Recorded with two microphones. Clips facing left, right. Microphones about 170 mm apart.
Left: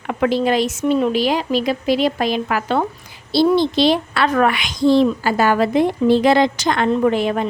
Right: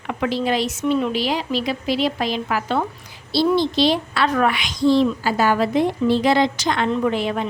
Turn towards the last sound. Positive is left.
turn(degrees=50)  # may be behind; listen again after turning